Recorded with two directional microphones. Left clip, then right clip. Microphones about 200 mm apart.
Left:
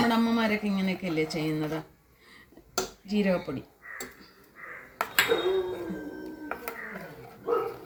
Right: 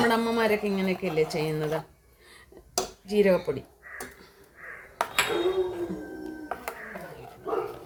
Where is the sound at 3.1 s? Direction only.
55° right (ahead or behind).